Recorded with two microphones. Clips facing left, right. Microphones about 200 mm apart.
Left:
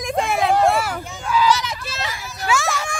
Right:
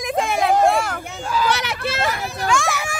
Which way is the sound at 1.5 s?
65° right (ahead or behind).